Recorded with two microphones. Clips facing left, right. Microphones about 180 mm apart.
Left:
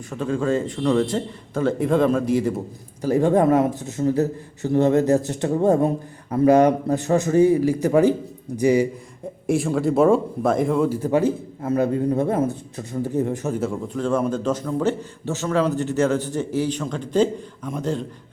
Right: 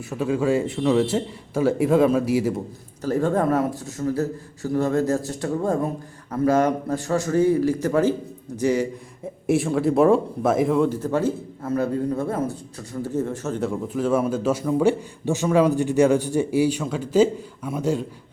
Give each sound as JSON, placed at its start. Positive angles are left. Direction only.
{"t": 0.1, "sound": "a man's voice", "side_deg": -10}
{"t": 3.0, "sound": "a man's voice", "side_deg": 15}
{"t": 9.5, "sound": "speech", "side_deg": 0}
{"t": 11.0, "sound": "a man's voice", "side_deg": 15}
{"t": 13.6, "sound": "a man's voice", "side_deg": -5}